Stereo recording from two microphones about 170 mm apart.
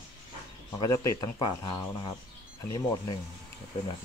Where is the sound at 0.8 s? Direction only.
20° left (ahead or behind).